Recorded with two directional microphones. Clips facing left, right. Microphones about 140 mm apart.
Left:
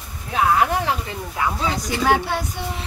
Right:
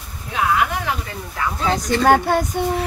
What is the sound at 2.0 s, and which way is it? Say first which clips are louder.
Speech: right 4 dB; 45° right (ahead or behind).